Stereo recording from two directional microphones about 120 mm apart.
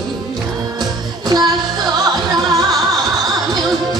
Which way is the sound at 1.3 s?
35° right (ahead or behind).